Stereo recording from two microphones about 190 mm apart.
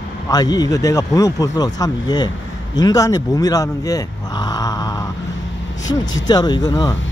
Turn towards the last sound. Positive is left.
turn(degrees=20)  # may be behind; listen again after turning